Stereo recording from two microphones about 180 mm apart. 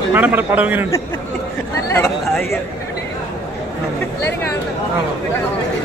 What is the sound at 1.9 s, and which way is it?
Chatter, 15° left (ahead or behind).